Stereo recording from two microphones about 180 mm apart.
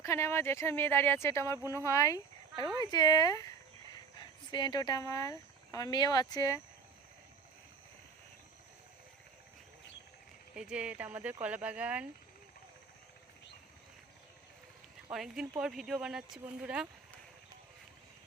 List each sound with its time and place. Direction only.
0.0 s speech: 15° left (ahead or behind)
10.5 s speech: 5° right (ahead or behind)
15.1 s speech: 5° right (ahead or behind)